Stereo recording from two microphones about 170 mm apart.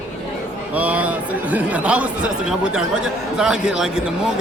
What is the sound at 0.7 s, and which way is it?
Speech, 10° right (ahead or behind).